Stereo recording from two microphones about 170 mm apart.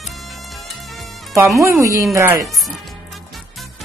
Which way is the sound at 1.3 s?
15° right (ahead or behind).